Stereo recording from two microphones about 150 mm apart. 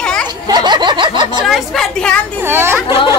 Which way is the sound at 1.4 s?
Centre (ahead or behind).